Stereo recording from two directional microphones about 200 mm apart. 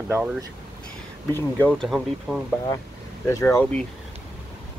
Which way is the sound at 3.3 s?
15° left (ahead or behind).